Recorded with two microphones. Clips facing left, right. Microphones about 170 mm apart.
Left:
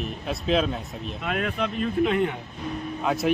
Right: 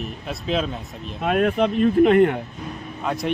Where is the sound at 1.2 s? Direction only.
50° right (ahead or behind).